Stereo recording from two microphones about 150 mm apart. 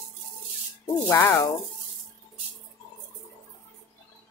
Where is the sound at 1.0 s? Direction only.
20° left (ahead or behind).